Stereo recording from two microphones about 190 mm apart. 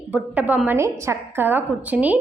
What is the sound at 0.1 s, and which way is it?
A woman's voice, 10° right (ahead or behind).